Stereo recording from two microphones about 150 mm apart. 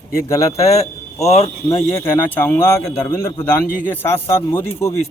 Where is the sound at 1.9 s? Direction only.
15° left (ahead or behind).